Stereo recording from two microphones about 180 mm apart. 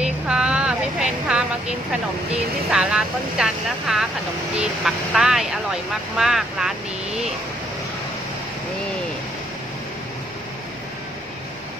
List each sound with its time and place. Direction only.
0.0 s music: 5° right (ahead or behind)
2.7 s speech: 5° right (ahead or behind)